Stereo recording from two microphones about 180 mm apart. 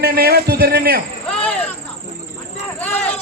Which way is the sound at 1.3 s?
5° left (ahead or behind).